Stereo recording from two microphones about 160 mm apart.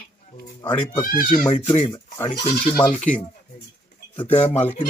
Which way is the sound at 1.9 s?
20° left (ahead or behind).